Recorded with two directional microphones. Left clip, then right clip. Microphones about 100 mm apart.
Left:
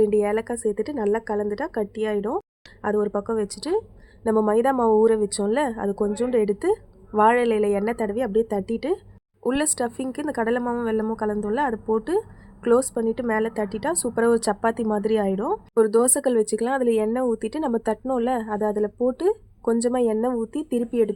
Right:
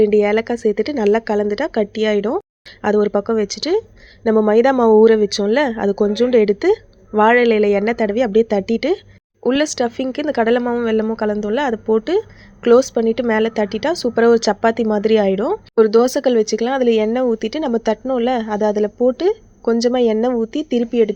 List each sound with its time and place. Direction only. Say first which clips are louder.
0.0 s a woman's voice: right 7 dB; 20° right (ahead or behind)
10.6 s speech: right 7 dB; 10° right (ahead or behind)